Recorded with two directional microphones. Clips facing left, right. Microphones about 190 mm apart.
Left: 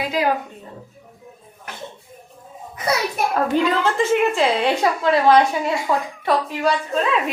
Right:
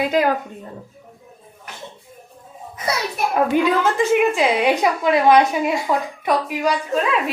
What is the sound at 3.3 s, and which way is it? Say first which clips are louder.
A woman's voice: right 3 dB; 15° right (ahead or behind).